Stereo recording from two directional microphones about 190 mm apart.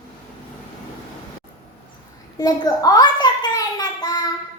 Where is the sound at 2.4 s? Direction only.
20° left (ahead or behind).